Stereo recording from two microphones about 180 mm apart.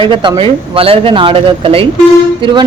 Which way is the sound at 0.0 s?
25° right (ahead or behind).